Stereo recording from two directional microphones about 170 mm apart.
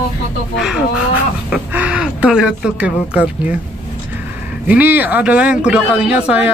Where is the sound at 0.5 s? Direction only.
5° right (ahead or behind).